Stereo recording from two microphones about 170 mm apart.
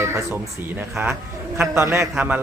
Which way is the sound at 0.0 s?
15° right (ahead or behind).